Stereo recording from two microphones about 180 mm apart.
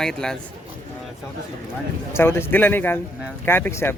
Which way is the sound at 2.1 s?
10° left (ahead or behind).